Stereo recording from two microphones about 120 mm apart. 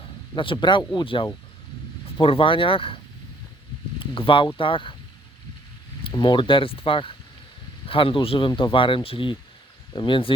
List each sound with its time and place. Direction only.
0.3 s speech: 45° left (ahead or behind)
4.0 s speech: 50° left (ahead or behind)
6.0 s speech: 45° left (ahead or behind)